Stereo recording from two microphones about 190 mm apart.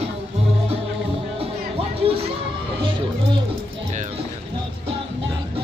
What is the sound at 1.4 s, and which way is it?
Music, 30° right (ahead or behind).